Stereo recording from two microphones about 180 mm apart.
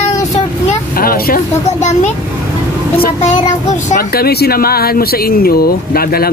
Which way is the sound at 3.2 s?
40° left (ahead or behind).